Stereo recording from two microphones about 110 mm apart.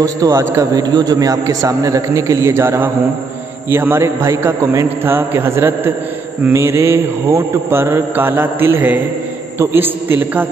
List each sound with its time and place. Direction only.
0.0 s a man's voice: 30° right (ahead or behind)
3.7 s mantra: 20° right (ahead or behind)